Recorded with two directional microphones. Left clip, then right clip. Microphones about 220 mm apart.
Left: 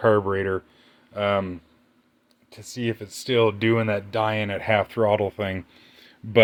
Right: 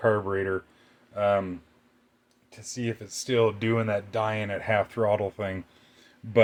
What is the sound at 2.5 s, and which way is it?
Speech, 45° left (ahead or behind).